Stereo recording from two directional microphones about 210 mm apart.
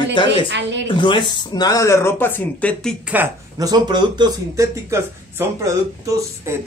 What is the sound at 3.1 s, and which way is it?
Speech, 15° right (ahead or behind).